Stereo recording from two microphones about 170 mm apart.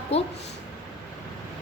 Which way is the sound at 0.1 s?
35° left (ahead or behind).